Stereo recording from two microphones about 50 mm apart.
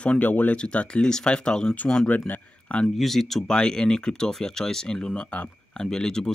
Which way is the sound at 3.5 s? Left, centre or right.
Centre.